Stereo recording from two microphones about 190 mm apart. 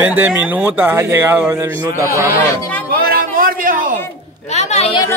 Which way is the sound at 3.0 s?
50° right (ahead or behind).